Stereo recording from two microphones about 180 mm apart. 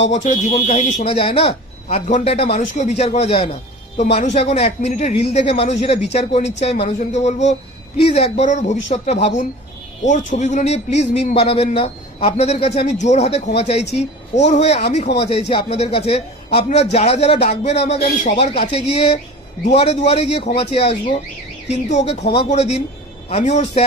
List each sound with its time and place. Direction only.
0.0 s speech: 40° left (ahead or behind)